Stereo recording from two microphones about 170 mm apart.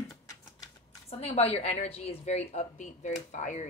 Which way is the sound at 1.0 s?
35° left (ahead or behind).